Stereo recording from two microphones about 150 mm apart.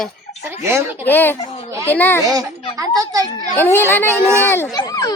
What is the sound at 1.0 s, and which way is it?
Speech, 15° left (ahead or behind).